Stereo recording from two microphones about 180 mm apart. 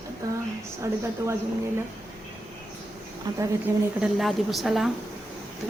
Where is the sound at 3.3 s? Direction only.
25° right (ahead or behind).